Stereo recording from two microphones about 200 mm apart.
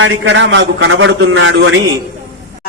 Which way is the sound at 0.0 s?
65° right (ahead or behind).